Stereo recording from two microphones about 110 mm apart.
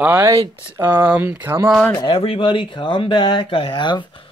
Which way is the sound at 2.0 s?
55° left (ahead or behind).